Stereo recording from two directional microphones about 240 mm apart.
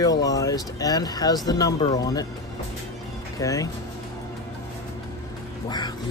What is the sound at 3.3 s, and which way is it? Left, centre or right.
Speech, centre.